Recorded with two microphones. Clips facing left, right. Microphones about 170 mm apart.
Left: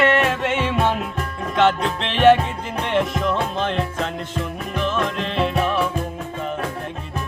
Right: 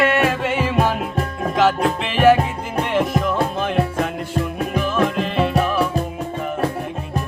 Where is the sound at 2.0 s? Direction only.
5° right (ahead or behind).